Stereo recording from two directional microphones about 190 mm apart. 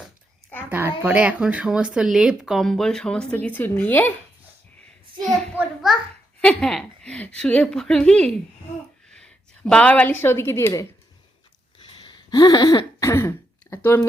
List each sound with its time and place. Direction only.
0.7 s speech: 10° right (ahead or behind); by 4.1 s 10° left (ahead or behind)
5.2 s a woman's voice: 5° left (ahead or behind)
11.9 s throat clearing: 25° left (ahead or behind)